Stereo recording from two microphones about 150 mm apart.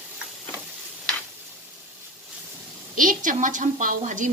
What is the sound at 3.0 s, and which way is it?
Speech, 60° right (ahead or behind).